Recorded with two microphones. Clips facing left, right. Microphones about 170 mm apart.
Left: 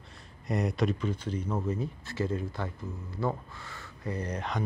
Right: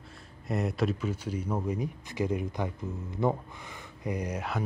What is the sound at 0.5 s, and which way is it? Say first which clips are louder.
Speech: even; centre (ahead or behind).